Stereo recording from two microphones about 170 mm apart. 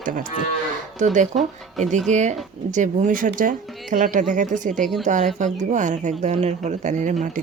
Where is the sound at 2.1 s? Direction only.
45° right (ahead or behind).